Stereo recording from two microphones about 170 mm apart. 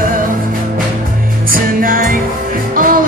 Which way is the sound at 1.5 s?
55° right (ahead or behind).